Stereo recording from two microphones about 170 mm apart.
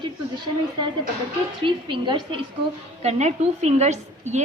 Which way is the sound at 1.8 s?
30° right (ahead or behind).